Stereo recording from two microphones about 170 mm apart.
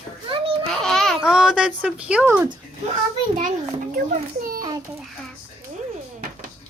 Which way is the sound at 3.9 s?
55° right (ahead or behind).